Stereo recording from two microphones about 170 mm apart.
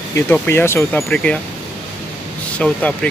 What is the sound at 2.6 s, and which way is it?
Speech, 5° left (ahead or behind).